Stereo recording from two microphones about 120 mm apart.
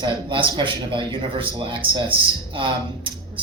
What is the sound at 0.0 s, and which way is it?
Speech, 40° right (ahead or behind).